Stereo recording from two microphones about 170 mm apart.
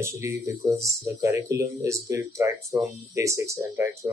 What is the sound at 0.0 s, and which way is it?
Speech, 15° right (ahead or behind).